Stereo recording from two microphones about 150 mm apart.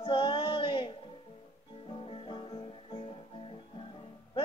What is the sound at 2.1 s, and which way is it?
Music, 35° left (ahead or behind).